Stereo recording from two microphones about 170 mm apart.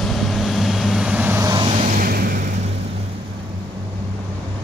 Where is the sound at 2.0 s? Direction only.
60° right (ahead or behind).